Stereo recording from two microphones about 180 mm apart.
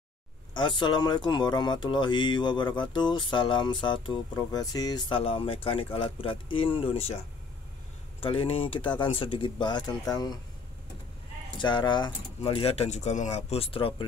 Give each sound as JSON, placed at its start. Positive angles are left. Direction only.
{"t": 0.6, "sound": "speech", "side_deg": 25}
{"t": 8.2, "sound": "speech", "side_deg": 30}
{"t": 11.5, "sound": "speech", "side_deg": 25}